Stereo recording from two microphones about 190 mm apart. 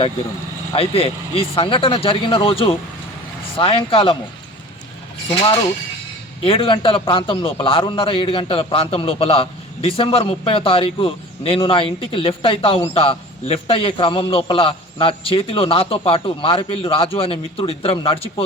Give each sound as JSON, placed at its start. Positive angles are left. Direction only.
{"t": 0.7, "sound": "a man's voice", "side_deg": 30}
{"t": 5.3, "sound": "a man's voice", "side_deg": 25}